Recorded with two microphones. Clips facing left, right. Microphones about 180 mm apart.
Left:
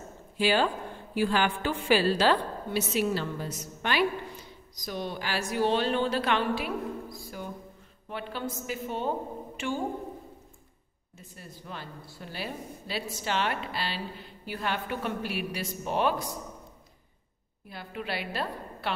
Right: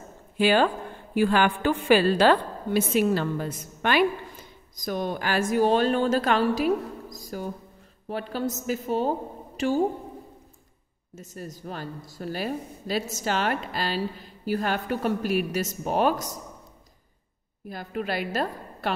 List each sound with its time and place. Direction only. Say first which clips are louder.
0.4 s a woman's voice: right 4 dB; 55° right (ahead or behind); by 9.7 s 40° right (ahead or behind)
11.1 s a woman's voice: right 9 dB; 45° right (ahead or behind)
17.6 s a woman's voice: right 6 dB; 45° right (ahead or behind)